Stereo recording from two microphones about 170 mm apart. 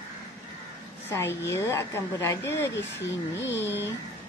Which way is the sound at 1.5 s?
15° left (ahead or behind).